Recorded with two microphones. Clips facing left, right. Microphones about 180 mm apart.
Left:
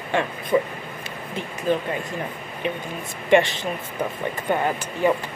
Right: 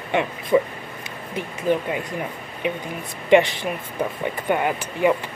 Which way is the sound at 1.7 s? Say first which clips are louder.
Right 1 dB; 15° right (ahead or behind).